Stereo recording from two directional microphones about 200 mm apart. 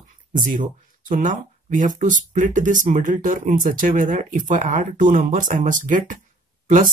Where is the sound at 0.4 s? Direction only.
40° right (ahead or behind).